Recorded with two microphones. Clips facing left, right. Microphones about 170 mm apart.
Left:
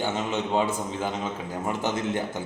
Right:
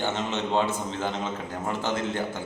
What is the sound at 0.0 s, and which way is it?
A man's voice, 10° left (ahead or behind).